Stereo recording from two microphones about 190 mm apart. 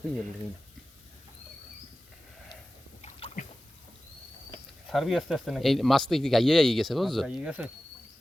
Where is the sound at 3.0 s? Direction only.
35° left (ahead or behind).